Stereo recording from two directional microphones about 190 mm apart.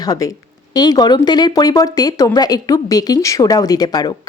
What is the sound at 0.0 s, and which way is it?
Speech, 20° left (ahead or behind).